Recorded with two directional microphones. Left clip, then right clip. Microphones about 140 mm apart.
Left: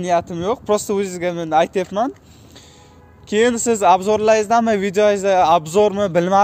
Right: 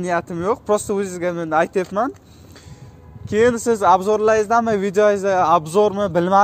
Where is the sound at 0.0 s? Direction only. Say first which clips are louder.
Left 3 dB; 15° left (ahead or behind).